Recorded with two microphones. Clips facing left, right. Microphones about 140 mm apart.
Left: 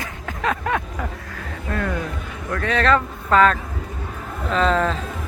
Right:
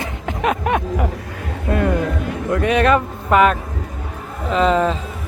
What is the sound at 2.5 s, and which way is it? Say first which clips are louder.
Speech: right 4 dB; 15° right (ahead or behind).